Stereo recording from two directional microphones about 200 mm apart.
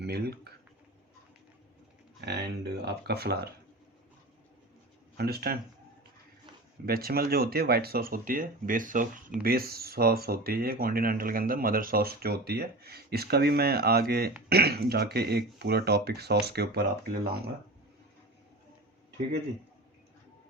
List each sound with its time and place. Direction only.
0.0 s speech: 55° right (ahead or behind)
2.2 s speech: 55° right (ahead or behind)
5.1 s speech: 50° right (ahead or behind)
6.8 s speech: 50° right (ahead or behind)